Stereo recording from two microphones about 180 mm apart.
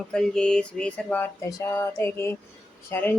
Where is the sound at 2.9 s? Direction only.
10° left (ahead or behind).